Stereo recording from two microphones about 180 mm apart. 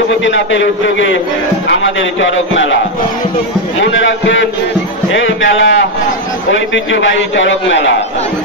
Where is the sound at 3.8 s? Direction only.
90° left.